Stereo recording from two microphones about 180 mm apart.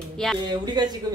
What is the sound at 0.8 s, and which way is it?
Speech, 25° right (ahead or behind).